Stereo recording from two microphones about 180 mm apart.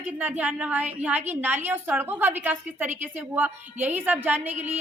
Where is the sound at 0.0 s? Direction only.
10° right (ahead or behind).